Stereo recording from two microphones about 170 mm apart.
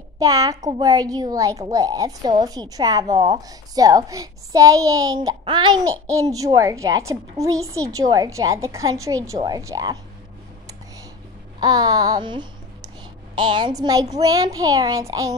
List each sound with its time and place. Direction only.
0.2 s a woman's voice: 20° right (ahead or behind)
11.6 s a child's voice: 20° right (ahead or behind)